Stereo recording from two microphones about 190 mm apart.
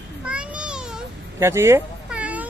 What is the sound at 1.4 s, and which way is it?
Cat, 15° right (ahead or behind).